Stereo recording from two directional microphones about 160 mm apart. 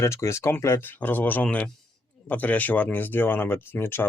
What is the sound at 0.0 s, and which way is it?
Speech, 15° left (ahead or behind).